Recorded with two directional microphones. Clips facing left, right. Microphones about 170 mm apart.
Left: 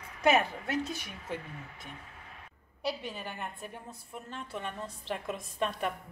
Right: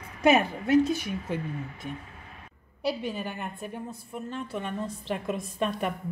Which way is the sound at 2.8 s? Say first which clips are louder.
Right 6 dB; 5° right (ahead or behind).